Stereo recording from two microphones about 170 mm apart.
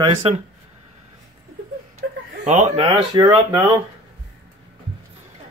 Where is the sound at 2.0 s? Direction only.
75° right (ahead or behind).